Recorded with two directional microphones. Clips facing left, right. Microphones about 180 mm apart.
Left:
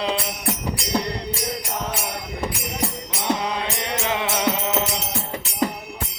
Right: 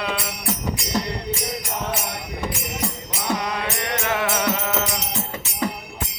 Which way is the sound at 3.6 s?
20° left (ahead or behind).